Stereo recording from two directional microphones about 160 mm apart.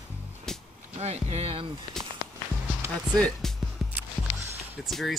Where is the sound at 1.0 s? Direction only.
40° right (ahead or behind).